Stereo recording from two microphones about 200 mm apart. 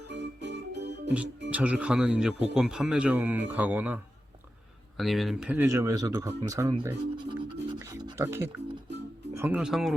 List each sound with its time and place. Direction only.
0.1 s music: 60° right (ahead or behind)
1.5 s speech: 5° right (ahead or behind)